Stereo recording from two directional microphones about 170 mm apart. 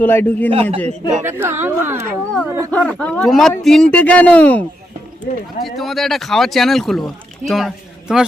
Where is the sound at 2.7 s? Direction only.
5° left (ahead or behind).